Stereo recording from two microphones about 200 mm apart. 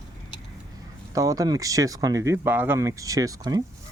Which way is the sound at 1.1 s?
15° right (ahead or behind).